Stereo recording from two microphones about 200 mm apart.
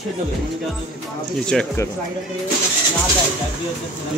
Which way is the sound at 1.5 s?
5° left (ahead or behind).